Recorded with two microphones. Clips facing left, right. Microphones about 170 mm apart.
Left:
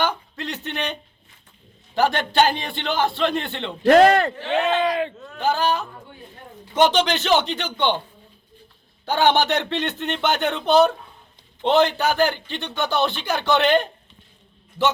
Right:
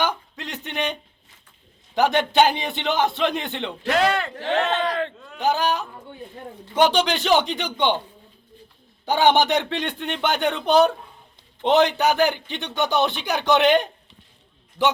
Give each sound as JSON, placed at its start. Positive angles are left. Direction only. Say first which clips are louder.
{"t": 0.0, "sound": "a sound", "louder": "left 1 dB", "side_deg": -10}
{"t": 2.0, "sound": "a man's voice", "louder": "right 1 dB", "side_deg": -15}
{"t": 3.8, "sound": "a man's voice", "louder": "left 8 dB", "side_deg": 45}
{"t": 4.5, "sound": "speech", "louder": "left 2 dB", "side_deg": 15}
{"t": 5.4, "sound": "a man's voice", "louder": "even", "side_deg": -15}
{"t": 9.0, "sound": "a man's voice", "louder": "right 1 dB", "side_deg": -15}